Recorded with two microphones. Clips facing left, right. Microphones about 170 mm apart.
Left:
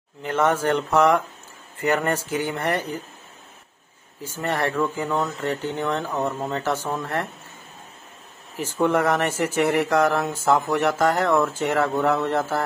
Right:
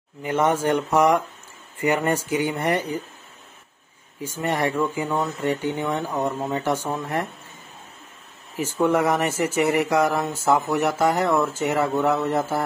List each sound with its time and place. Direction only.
0.2 s speech: 10° right (ahead or behind)
4.4 s speech: 10° right (ahead or behind)
8.7 s speech: 10° right (ahead or behind)